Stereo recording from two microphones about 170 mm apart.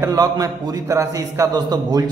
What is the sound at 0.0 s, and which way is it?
A man's voice, 20° right (ahead or behind).